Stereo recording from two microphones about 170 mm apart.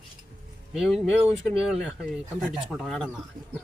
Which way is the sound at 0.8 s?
5° right (ahead or behind).